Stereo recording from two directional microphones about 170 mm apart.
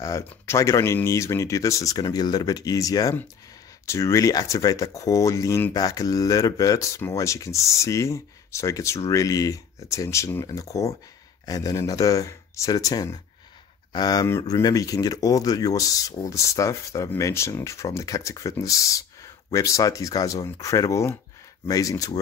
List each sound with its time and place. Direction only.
0.5 s speech: 15° left (ahead or behind)